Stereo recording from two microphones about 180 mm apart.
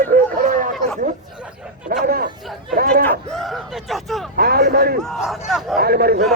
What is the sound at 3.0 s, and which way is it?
Speech, 5° left (ahead or behind).